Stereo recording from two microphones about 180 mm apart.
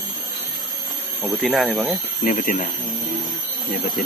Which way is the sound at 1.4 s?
Centre (ahead or behind).